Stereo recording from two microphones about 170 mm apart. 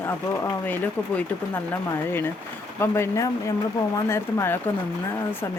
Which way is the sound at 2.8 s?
15° left (ahead or behind).